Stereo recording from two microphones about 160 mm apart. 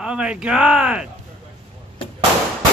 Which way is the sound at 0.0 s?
5° right (ahead or behind).